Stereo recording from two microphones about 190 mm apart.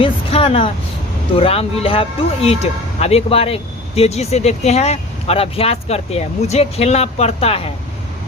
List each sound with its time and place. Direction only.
0.0 s speech: 30° left (ahead or behind)